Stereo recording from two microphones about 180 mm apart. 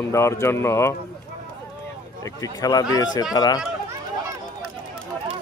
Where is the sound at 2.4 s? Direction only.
20° left (ahead or behind).